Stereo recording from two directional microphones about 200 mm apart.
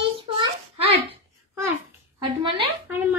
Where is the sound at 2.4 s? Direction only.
25° right (ahead or behind).